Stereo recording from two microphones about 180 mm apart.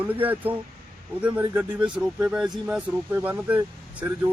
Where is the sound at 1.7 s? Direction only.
25° right (ahead or behind).